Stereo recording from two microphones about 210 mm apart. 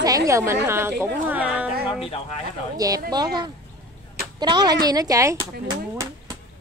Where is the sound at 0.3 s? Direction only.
15° right (ahead or behind).